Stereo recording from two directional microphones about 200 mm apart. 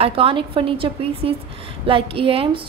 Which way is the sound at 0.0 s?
30° right (ahead or behind).